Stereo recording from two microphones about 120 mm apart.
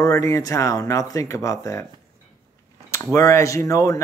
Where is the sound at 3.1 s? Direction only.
25° left (ahead or behind).